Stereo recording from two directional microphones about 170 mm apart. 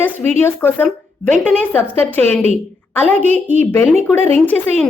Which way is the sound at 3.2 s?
45° right (ahead or behind).